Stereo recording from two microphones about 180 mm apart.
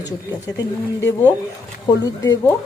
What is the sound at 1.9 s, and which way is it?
Speech, 25° left (ahead or behind).